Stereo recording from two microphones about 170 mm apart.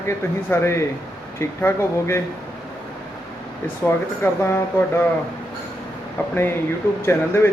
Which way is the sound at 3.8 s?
15° left (ahead or behind).